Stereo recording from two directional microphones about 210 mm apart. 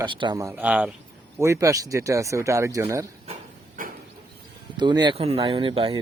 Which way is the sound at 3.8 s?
40° right (ahead or behind).